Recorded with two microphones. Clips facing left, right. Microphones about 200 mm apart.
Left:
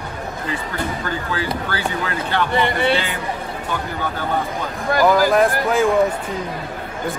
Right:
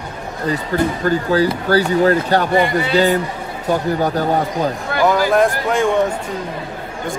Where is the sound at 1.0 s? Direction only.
40° right (ahead or behind).